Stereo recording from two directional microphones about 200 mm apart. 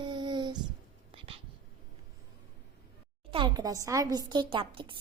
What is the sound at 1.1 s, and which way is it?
Whispering, 25° right (ahead or behind).